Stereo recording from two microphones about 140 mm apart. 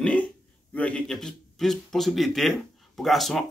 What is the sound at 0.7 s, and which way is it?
A man's voice, 10° left (ahead or behind).